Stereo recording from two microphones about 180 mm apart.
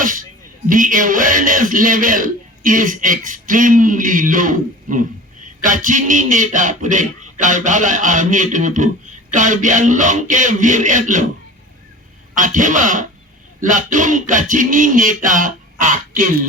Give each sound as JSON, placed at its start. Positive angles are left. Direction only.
{"t": 0.0, "sound": "a sound", "side_deg": -50}
{"t": 0.7, "sound": "a man's voice", "side_deg": -50}
{"t": 12.4, "sound": "a man's voice", "side_deg": -45}